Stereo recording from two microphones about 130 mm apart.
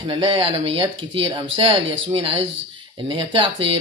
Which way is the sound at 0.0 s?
40° right (ahead or behind).